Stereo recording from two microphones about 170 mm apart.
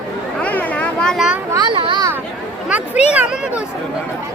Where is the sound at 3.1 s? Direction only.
5° right (ahead or behind).